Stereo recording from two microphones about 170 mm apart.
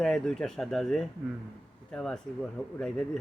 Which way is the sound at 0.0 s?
5° left (ahead or behind).